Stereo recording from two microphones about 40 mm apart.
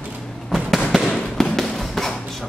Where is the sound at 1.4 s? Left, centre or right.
Centre.